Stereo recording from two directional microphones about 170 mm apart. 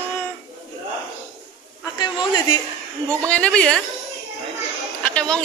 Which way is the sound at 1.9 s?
25° left (ahead or behind).